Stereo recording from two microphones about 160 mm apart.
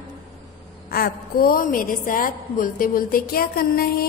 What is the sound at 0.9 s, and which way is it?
A woman's voice, 65° left (ahead or behind).